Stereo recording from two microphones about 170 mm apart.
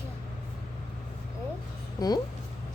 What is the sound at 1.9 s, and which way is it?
Speech, 25° left (ahead or behind).